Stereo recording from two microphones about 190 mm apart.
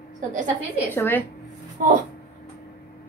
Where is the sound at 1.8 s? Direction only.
45° right (ahead or behind).